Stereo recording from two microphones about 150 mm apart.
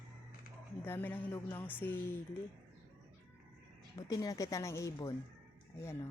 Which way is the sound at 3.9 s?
25° left (ahead or behind).